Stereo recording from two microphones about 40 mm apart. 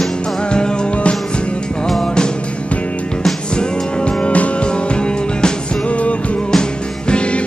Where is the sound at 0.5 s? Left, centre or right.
Left.